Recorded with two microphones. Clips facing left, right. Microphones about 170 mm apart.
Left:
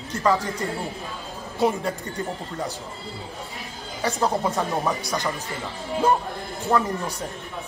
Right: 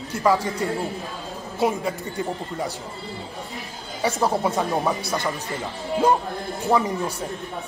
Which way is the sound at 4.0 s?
5° right (ahead or behind).